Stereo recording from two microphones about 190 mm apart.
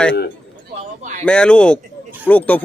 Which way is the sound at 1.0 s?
40° right (ahead or behind).